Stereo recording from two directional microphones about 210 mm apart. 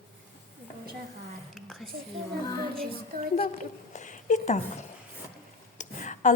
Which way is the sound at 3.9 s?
35° left (ahead or behind).